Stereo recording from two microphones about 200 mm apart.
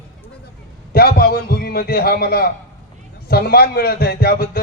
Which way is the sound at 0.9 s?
50° left (ahead or behind).